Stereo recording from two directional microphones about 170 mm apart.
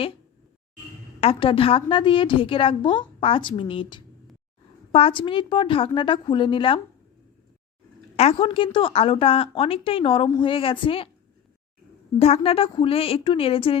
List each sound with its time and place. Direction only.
1.2 s a woman's voice: 35° left (ahead or behind)
8.1 s a woman's voice: 35° left (ahead or behind)
12.2 s a woman's voice: 35° left (ahead or behind)